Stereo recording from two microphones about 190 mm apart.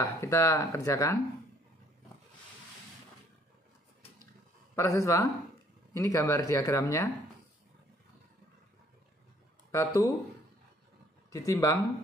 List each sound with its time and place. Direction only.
0.0 s speech: 15° left (ahead or behind)
4.7 s speech: 15° left (ahead or behind)
9.7 s speech: 15° left (ahead or behind)
11.3 s speech: 15° left (ahead or behind)